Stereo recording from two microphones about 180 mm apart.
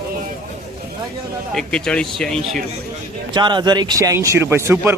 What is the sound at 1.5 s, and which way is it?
Speech, 5° left (ahead or behind).